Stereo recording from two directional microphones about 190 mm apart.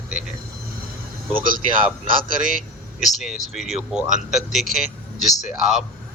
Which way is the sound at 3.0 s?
Centre (ahead or behind).